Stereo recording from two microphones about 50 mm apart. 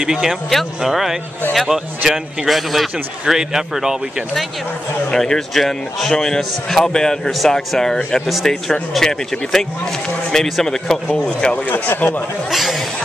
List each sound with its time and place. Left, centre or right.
0.0 s a man's voice: centre
5.1 s a man's voice: centre
7.2 s a man's voice: centre
11.1 s a man's voice: centre
11.7 s speech: left
12.4 s speech: centre